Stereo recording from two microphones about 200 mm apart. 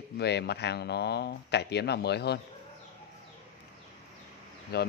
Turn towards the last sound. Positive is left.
turn(degrees=55)  # may be behind; listen again after turning